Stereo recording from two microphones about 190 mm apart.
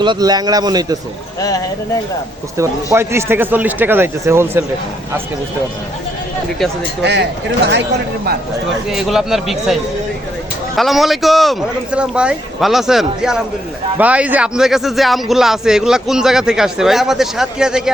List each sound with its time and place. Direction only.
0.0 s a man's voice: 20° right (ahead or behind)
1.4 s speech: 20° left (ahead or behind)
2.6 s speech: 15° right (ahead or behind)
7.6 s speech: 65° right (ahead or behind)
8.9 s a man's voice: centre (ahead or behind)
10.8 s a man's voice: centre (ahead or behind)